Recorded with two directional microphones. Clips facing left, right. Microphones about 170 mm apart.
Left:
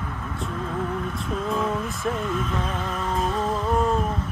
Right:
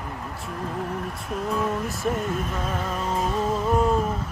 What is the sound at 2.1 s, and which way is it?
Speech, 55° right (ahead or behind).